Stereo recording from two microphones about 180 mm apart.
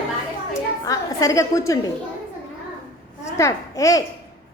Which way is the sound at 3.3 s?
15° left (ahead or behind).